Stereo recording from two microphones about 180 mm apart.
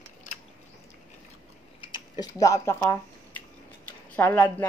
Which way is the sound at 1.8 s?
25° left (ahead or behind).